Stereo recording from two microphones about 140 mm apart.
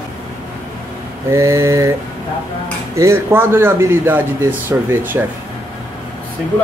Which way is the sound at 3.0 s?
15° right (ahead or behind).